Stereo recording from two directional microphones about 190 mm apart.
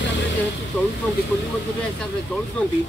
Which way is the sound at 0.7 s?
10° left (ahead or behind).